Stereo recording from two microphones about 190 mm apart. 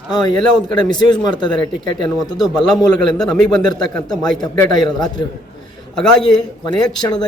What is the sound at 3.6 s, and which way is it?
Speech, 20° left (ahead or behind).